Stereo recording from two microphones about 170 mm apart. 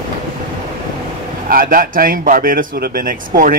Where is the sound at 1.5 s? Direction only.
55° right (ahead or behind).